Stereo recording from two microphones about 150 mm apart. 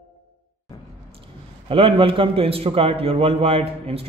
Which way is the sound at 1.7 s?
35° right (ahead or behind).